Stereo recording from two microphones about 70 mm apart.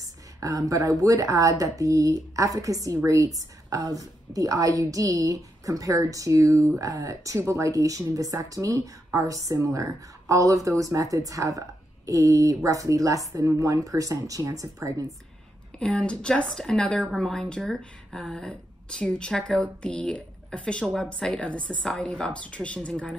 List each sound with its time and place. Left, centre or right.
0.4 s a woman's voice: right
7.3 s speech: right
15.8 s a woman's voice: centre